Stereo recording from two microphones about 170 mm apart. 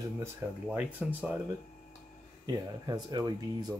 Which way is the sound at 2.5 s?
25° right (ahead or behind).